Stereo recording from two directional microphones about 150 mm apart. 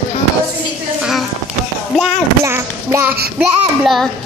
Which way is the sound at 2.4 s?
15° right (ahead or behind).